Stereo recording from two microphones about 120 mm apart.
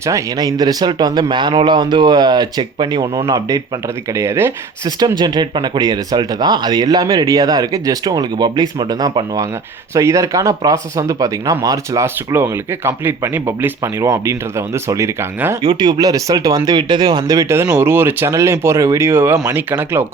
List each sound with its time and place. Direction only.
0.0 s speech: 30° right (ahead or behind)
4.1 s speech: 25° right (ahead or behind)
4.9 s speech: 35° right (ahead or behind)
12.0 s speech: 20° right (ahead or behind)